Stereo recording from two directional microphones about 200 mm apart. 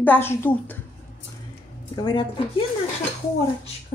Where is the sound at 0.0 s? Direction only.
10° left (ahead or behind).